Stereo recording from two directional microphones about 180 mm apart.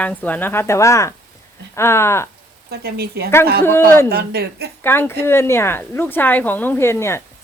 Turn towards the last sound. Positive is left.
turn(degrees=15)  # may be behind; listen again after turning